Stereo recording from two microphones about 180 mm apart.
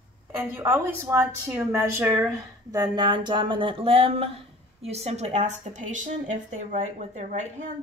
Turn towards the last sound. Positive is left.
turn(degrees=-40)  # may be behind; listen again after turning